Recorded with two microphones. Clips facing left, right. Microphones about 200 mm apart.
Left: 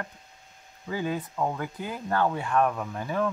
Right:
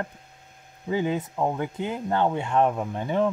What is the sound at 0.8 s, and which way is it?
Speech, 20° right (ahead or behind).